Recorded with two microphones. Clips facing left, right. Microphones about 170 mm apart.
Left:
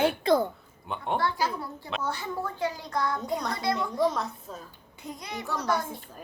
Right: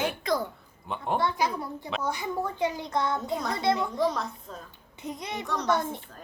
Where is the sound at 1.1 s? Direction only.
20° right (ahead or behind).